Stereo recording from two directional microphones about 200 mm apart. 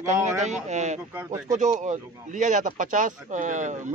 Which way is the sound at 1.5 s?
40° right (ahead or behind).